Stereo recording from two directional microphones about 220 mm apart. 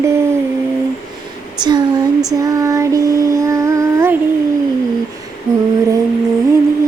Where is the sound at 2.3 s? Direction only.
15° right (ahead or behind).